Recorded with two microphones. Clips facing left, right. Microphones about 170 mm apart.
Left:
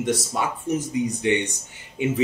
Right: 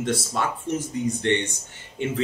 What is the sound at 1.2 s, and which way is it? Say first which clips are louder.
Speech: left 1 dB; 10° left (ahead or behind).